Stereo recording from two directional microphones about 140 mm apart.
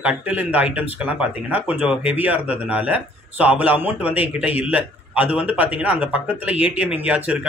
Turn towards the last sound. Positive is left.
turn(degrees=-10)  # may be behind; listen again after turning